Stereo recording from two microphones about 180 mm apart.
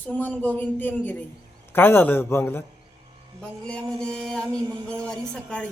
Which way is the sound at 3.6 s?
5° left (ahead or behind).